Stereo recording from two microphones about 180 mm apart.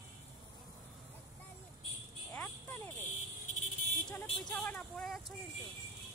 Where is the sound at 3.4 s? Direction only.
45° left (ahead or behind).